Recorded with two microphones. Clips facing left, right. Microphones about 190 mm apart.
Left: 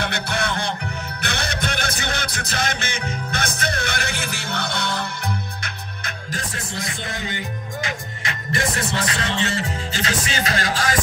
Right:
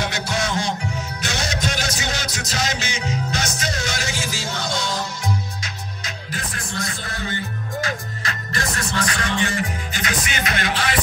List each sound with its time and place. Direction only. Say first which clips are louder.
0.0 s music: even; 60° left (ahead or behind)
6.5 s music: right 1 dB; 25° left (ahead or behind); by 11.0 s 40° left (ahead or behind)